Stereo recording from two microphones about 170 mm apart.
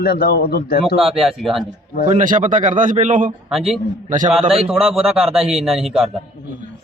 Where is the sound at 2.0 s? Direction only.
50° right (ahead or behind).